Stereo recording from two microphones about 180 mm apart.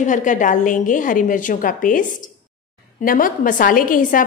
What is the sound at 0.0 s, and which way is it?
A woman's voice, 45° left (ahead or behind).